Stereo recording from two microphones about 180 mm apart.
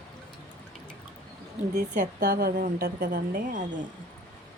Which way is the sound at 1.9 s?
45° right (ahead or behind).